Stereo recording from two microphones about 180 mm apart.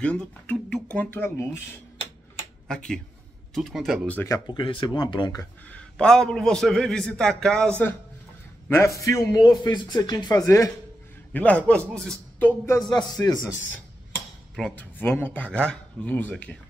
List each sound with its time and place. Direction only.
0.0 s speech: 5° left (ahead or behind)
2.7 s a man's voice: 5° left (ahead or behind)
4.2 s a man's voice: 20° left (ahead or behind)
5.7 s a man's voice: 5° left (ahead or behind); by 13.4 s 20° left (ahead or behind)
14.5 s speech: 5° left (ahead or behind)